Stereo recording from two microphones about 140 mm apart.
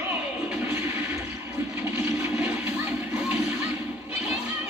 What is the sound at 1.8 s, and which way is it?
Toilet flush, 20° right (ahead or behind).